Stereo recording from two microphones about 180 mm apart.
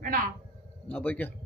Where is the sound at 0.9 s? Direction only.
10° left (ahead or behind).